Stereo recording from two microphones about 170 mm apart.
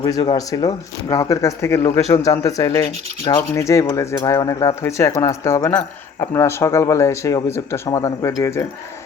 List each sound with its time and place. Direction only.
0.0 s speech: 25° left (ahead or behind)